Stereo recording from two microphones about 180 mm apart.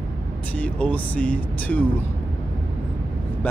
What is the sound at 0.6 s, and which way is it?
Speech, 10° left (ahead or behind).